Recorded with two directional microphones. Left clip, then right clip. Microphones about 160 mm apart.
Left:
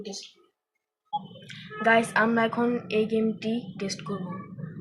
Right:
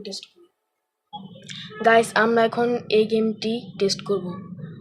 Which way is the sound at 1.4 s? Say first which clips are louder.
Right 5 dB; 90° right.